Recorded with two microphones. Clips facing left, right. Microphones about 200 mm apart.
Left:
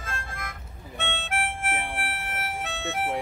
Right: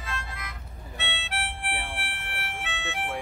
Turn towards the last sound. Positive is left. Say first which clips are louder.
# left 4 dB
turn(degrees=40)  # may be behind; listen again after turning